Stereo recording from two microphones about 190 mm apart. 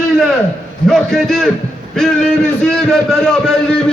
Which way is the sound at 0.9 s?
Centre (ahead or behind).